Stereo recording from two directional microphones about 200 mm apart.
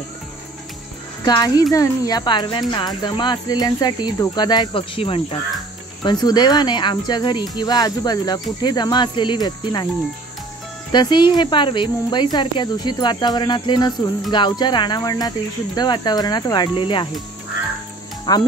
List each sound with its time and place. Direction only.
1.2 s speech: 20° left (ahead or behind)
10.9 s speech: 20° left (ahead or behind)
18.3 s speech: 20° left (ahead or behind)